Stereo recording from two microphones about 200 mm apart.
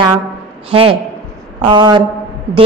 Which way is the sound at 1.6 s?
20° right (ahead or behind).